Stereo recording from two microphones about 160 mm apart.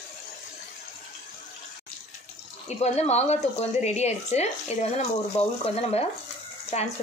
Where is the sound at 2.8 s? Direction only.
40° left (ahead or behind).